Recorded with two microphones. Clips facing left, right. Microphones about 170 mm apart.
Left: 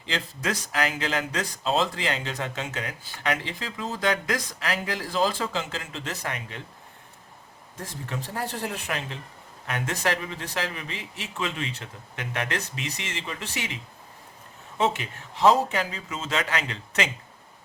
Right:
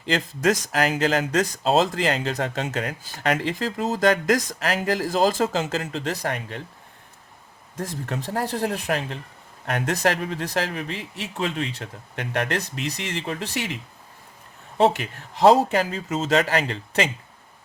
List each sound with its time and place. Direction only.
0.0 s speech: 45° right (ahead or behind)
7.8 s speech: 40° right (ahead or behind)
14.8 s speech: 40° right (ahead or behind)